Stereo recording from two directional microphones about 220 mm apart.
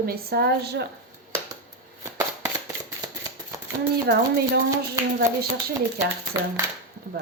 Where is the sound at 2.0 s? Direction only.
15° right (ahead or behind).